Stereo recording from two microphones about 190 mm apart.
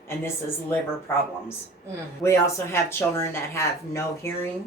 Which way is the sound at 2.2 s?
15° left (ahead or behind).